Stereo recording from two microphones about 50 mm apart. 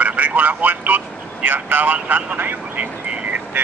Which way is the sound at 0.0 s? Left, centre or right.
Right.